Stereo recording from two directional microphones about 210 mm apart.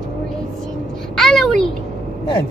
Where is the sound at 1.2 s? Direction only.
Centre (ahead or behind).